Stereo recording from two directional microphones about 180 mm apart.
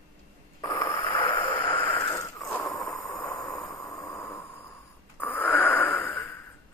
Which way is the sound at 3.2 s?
20° left (ahead or behind).